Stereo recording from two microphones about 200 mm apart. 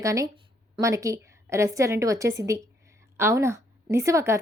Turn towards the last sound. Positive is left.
turn(degrees=-15)  # may be behind; listen again after turning